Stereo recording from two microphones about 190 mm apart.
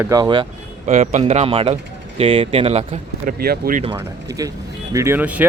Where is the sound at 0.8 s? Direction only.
40° right (ahead or behind).